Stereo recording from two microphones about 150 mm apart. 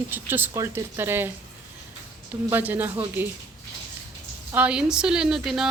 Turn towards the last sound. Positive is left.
turn(degrees=-5)  # may be behind; listen again after turning